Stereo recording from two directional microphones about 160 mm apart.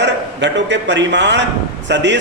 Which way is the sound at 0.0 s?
90° right.